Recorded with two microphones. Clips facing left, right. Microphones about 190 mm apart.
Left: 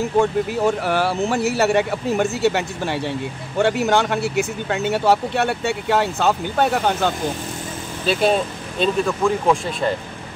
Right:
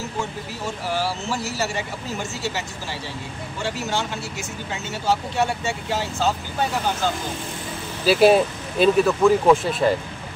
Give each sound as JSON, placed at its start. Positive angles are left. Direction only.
{"t": 0.2, "sound": "speech", "side_deg": 60}
{"t": 8.0, "sound": "speech", "side_deg": -5}